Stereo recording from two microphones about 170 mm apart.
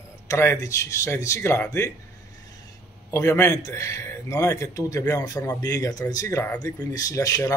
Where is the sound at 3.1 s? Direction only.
15° left (ahead or behind).